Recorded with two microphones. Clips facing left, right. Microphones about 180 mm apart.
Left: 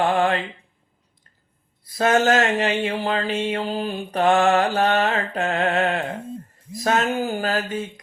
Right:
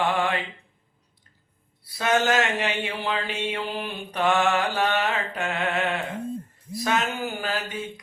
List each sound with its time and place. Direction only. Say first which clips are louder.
0.0 s mantra: left 5 dB; 45° left (ahead or behind)
2.0 s mantra: left 4 dB; 45° left (ahead or behind)
6.8 s speech: left 5 dB; 40° left (ahead or behind)